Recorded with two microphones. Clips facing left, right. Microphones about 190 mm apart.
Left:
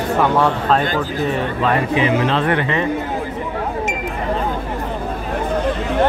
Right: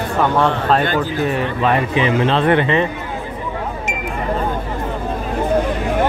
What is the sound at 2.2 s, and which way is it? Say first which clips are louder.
Speech: right 3 dB; 25° right (ahead or behind).